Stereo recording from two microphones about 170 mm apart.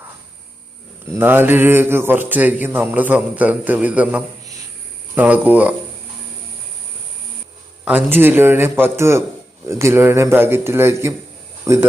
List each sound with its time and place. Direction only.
1.1 s mantra: 10° right (ahead or behind)
7.9 s mantra: 10° right (ahead or behind)
11.6 s speech: 15° right (ahead or behind)